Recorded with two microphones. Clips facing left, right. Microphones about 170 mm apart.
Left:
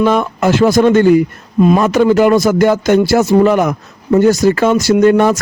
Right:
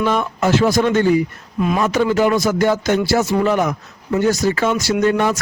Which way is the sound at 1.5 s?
35° left (ahead or behind).